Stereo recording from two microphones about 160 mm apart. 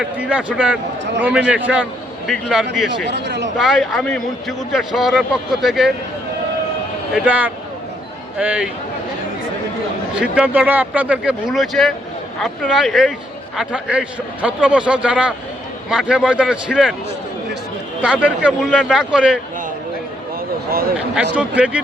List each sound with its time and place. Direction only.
0.0 s a man's voice: 5° right (ahead or behind)
3.1 s speech: 90° right
3.6 s a man's voice: centre (ahead or behind)
7.1 s a man's voice: 10° right (ahead or behind)
10.2 s a man's voice: 10° right (ahead or behind)
18.0 s a man's voice: 10° right (ahead or behind)
21.3 s a man's voice: 10° right (ahead or behind)